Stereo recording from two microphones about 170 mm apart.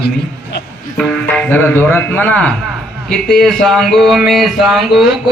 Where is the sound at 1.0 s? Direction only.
5° left (ahead or behind).